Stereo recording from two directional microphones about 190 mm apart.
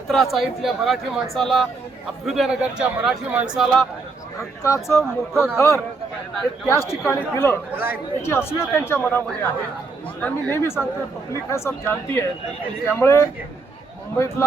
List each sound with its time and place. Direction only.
0.1 s a man's voice: centre (ahead or behind)
4.4 s speech: 15° left (ahead or behind)
5.3 s a man's voice: centre (ahead or behind)
5.5 s speech: 15° left (ahead or behind)